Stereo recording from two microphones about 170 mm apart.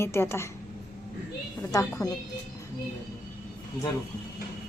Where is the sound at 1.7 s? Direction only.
20° left (ahead or behind).